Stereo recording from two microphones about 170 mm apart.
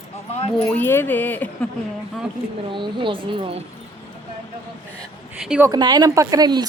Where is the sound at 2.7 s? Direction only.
30° right (ahead or behind).